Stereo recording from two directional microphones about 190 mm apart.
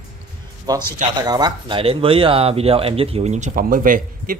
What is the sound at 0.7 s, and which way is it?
A man's voice, 20° right (ahead or behind).